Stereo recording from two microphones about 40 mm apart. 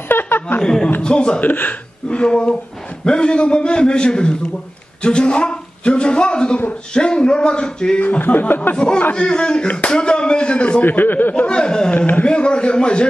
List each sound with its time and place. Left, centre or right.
0.1 s chuckle: left
0.6 s a man's voice: centre
1.4 s speech: left
2.0 s a man's voice: left
8.2 s speech: left
8.7 s a man's voice: left
10.8 s speech: left
11.3 s a man's voice: left